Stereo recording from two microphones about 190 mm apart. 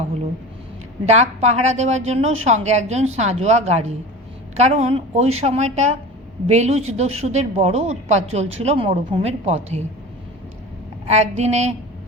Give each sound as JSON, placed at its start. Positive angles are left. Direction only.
{"t": 1.0, "sound": "a woman's voice", "side_deg": -35}
{"t": 11.1, "sound": "a woman's voice", "side_deg": -35}